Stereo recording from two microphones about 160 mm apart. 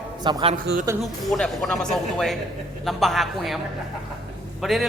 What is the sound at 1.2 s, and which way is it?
Speech, centre (ahead or behind).